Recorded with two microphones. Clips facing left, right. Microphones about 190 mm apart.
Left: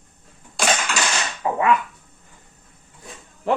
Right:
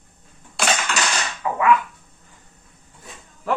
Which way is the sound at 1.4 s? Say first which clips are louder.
Left 2 dB; 30° left (ahead or behind).